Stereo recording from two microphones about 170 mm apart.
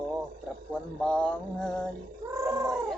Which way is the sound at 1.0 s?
5° left (ahead or behind).